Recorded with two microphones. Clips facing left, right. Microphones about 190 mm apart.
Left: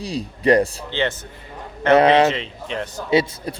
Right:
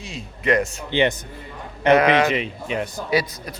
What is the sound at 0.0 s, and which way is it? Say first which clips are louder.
Speech: left 6 dB; 35° left (ahead or behind).